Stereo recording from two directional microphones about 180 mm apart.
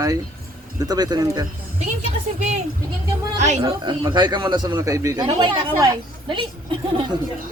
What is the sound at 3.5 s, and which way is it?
A woman's voice, 25° right (ahead or behind).